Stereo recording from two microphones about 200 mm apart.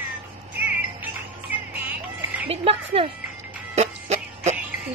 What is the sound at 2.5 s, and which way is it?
Speech, 30° right (ahead or behind).